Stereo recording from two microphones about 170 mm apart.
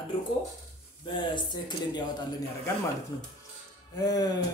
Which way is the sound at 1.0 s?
25° left (ahead or behind).